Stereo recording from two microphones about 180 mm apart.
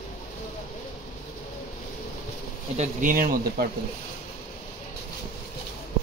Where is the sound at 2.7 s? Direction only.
45° right (ahead or behind).